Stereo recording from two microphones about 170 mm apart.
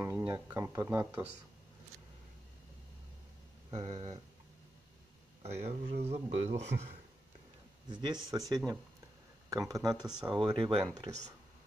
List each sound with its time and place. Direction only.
0.0 s speech: 15° right (ahead or behind)
3.7 s speech: 35° right (ahead or behind)
5.4 s speech: 40° right (ahead or behind)
7.9 s speech: 25° right (ahead or behind)
10.0 s speech: 5° right (ahead or behind)
10.4 s speech: 30° right (ahead or behind)